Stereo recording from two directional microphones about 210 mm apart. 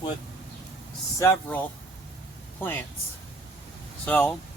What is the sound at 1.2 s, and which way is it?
Speech, 10° left (ahead or behind).